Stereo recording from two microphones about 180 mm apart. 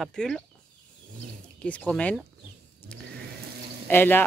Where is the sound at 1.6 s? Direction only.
10° left (ahead or behind).